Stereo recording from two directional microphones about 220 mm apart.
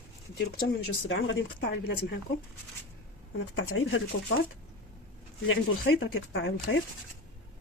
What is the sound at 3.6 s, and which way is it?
Speech, 65° left (ahead or behind).